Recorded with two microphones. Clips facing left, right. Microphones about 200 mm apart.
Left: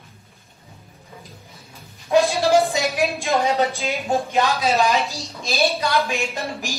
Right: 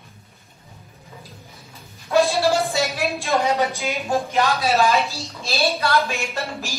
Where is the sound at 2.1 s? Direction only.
15° left (ahead or behind).